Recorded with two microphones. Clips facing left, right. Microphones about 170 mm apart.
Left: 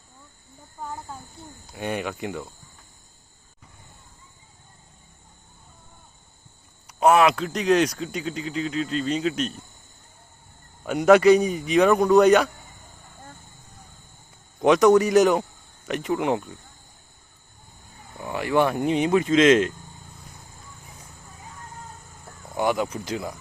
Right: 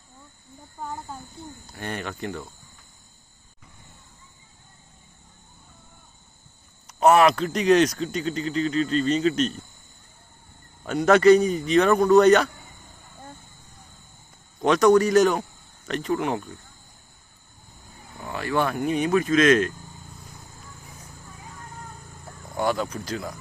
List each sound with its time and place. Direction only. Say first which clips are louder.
0.8 s speech: right 1 dB; centre (ahead or behind)
1.7 s a man's voice: left 4 dB; 10° left (ahead or behind)
7.0 s speech: right 1 dB; centre (ahead or behind)
10.8 s a man's voice: left 1 dB; 10° left (ahead or behind)
14.6 s a man's voice: left 1 dB; 15° left (ahead or behind)
18.2 s speech: left 3 dB; 15° left (ahead or behind)
22.5 s a man's voice: left 1 dB; 15° left (ahead or behind)